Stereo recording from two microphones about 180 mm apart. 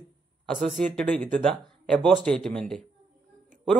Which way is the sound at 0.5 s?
40° right (ahead or behind).